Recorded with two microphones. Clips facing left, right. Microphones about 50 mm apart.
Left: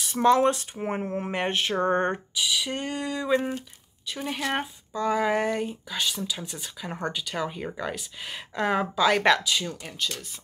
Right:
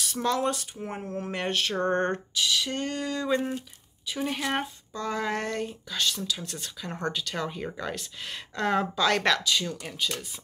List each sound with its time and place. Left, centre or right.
0.0 s speech: left; by 9.9 s centre